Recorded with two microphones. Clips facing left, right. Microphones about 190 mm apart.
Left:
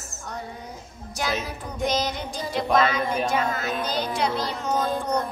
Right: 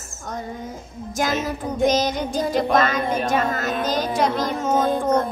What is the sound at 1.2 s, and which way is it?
Music, 45° right (ahead or behind).